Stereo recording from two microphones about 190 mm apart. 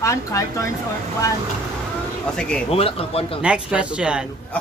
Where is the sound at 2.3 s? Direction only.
5° left (ahead or behind).